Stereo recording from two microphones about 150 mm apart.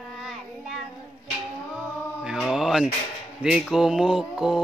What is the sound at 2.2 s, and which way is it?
Mantra, 5° right (ahead or behind).